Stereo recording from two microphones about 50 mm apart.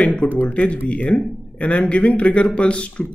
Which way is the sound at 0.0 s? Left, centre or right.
Centre.